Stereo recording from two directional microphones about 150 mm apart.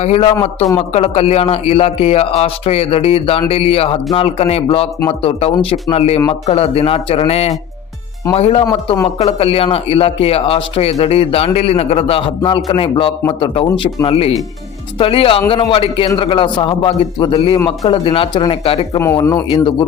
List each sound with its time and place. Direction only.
0.0 s a man's voice: 45° left (ahead or behind)
8.6 s speech: 25° left (ahead or behind)
9.1 s speech: 40° left (ahead or behind)
19.1 s speech: 20° left (ahead or behind)
19.5 s speech: 30° left (ahead or behind)